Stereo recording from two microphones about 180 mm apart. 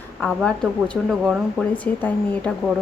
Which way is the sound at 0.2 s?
5° left (ahead or behind).